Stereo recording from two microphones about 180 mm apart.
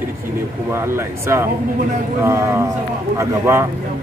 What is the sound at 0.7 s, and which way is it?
Speech, 15° right (ahead or behind).